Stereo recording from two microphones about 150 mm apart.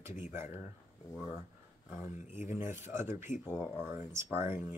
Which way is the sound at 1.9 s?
15° right (ahead or behind).